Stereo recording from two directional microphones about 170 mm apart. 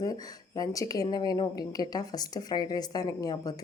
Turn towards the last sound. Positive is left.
turn(degrees=20)  # may be behind; listen again after turning